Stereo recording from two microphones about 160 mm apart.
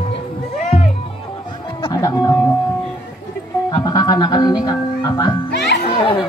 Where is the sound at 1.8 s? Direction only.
20° left (ahead or behind).